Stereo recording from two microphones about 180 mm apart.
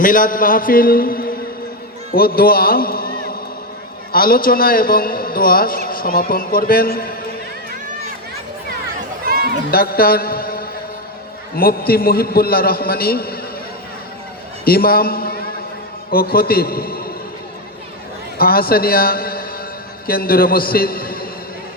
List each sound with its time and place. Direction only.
0.0 s a man's voice: 50° left (ahead or behind)
9.2 s chatter: 55° right (ahead or behind)
9.7 s a man's voice: 55° left (ahead or behind)
14.6 s a man's voice: 55° left (ahead or behind)
18.3 s a man's voice: 55° left (ahead or behind)